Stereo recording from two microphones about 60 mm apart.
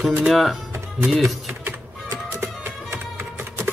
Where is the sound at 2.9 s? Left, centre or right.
Right.